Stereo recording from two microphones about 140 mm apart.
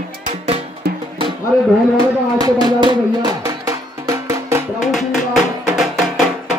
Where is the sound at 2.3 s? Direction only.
30° right (ahead or behind).